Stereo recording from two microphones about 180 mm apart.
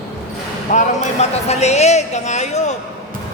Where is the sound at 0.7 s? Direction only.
40° left (ahead or behind).